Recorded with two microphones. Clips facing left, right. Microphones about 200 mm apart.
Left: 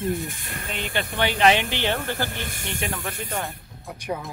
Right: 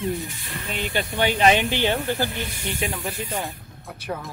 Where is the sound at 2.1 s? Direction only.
50° left (ahead or behind).